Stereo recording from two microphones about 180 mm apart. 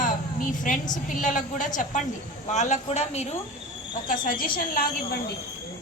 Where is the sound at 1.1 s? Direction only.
45° left (ahead or behind).